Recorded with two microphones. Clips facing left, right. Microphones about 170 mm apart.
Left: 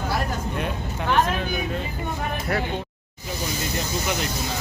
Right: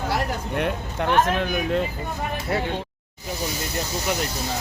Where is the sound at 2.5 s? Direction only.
25° right (ahead or behind).